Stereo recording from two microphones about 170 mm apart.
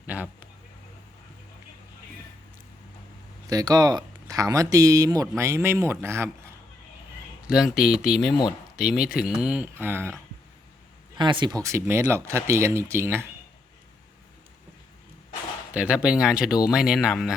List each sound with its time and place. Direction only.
0.0 s a sound: 10° right (ahead or behind)
3.5 s speech: 20° right (ahead or behind)
7.4 s speech: 5° right (ahead or behind)
8.3 s speech: 25° left (ahead or behind)
8.7 s speech: 5° right (ahead or behind)
11.2 s speech: 25° right (ahead or behind)
15.7 s speech: 5° right (ahead or behind)